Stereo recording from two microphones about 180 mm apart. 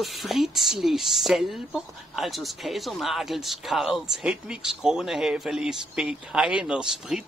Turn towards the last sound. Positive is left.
turn(degrees=-5)  # may be behind; listen again after turning